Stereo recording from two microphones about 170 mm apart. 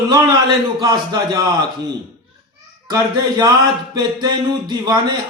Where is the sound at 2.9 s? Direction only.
25° right (ahead or behind).